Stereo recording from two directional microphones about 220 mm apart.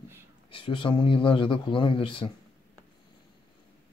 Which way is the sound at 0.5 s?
25° left (ahead or behind).